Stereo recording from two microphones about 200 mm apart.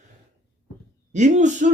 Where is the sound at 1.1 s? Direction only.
40° right (ahead or behind).